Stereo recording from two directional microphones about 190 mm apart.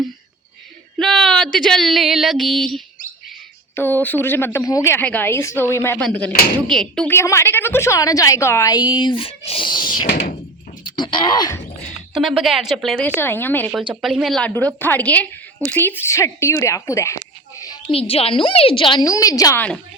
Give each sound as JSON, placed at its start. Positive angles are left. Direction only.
{"t": 0.9, "sound": "a sound", "side_deg": 0}
{"t": 1.5, "sound": "a woman's voice", "side_deg": 0}
{"t": 7.2, "sound": "a woman's voice", "side_deg": 15}
{"t": 12.1, "sound": "speech", "side_deg": 0}
{"t": 13.1, "sound": "a woman's voice", "side_deg": 10}
{"t": 13.7, "sound": "a woman's voice", "side_deg": 0}